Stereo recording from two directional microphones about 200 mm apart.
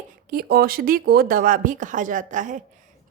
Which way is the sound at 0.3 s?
50° right (ahead or behind).